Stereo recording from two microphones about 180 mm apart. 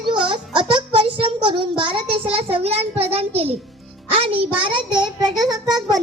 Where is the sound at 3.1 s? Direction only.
35° right (ahead or behind).